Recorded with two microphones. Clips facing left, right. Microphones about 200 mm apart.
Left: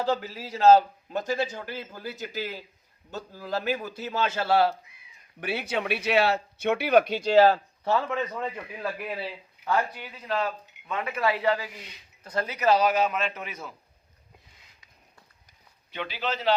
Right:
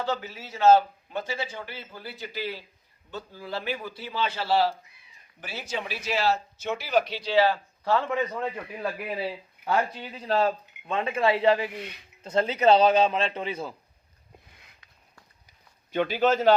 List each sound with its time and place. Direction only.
0.0 s a man's voice: 35° left (ahead or behind)
8.1 s a man's voice: 5° right (ahead or behind)
9.6 s a sound: 50° right (ahead or behind)
9.9 s speech: 25° right (ahead or behind)
11.7 s speech: 60° right (ahead or behind)
12.2 s speech: 25° right (ahead or behind)
15.9 s a man's voice: 45° right (ahead or behind)